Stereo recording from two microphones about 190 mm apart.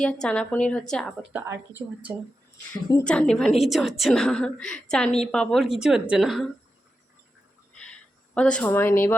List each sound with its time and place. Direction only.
0.0 s a woman's voice: 5° left (ahead or behind)
1.3 s speech: 10° right (ahead or behind)
3.0 s a woman's voice: 5° left (ahead or behind)
8.4 s speech: 5° left (ahead or behind)